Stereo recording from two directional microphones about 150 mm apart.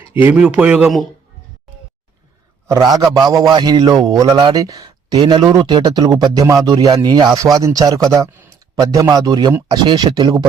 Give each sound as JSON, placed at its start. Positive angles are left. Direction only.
{"t": 0.1, "sound": "speech", "side_deg": -10}
{"t": 2.6, "sound": "speech", "side_deg": -20}
{"t": 5.1, "sound": "speech", "side_deg": -35}